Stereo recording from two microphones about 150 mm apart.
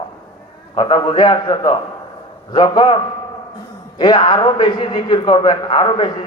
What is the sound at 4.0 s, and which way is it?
A man's voice, 30° left (ahead or behind).